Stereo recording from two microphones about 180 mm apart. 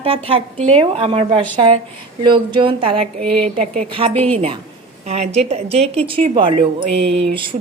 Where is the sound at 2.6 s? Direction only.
30° right (ahead or behind).